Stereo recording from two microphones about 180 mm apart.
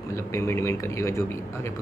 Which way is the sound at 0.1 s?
15° left (ahead or behind).